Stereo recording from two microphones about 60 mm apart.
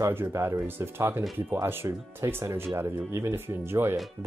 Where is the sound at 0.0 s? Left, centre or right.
Right.